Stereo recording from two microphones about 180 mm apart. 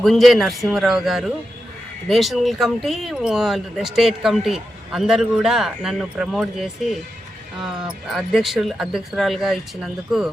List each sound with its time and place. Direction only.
0.0 s speech: centre (ahead or behind)